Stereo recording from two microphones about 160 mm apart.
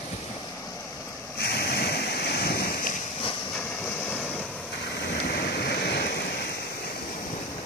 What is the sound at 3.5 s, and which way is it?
Vehicle, 10° left (ahead or behind).